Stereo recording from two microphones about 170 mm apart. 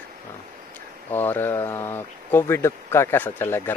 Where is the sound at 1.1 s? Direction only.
10° left (ahead or behind).